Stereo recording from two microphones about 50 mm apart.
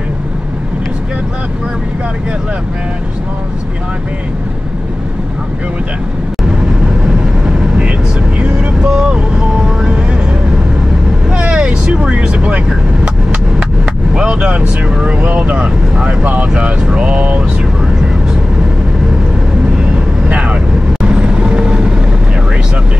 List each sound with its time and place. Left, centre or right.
7.1 s vehicle: centre
8.5 s speech: centre
11.3 s speech: centre
14.1 s speech: centre
20.2 s vehicle: right